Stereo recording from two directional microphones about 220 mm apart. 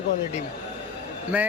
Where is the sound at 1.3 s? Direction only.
10° right (ahead or behind).